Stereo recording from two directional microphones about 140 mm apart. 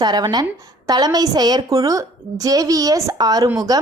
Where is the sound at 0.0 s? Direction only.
30° right (ahead or behind).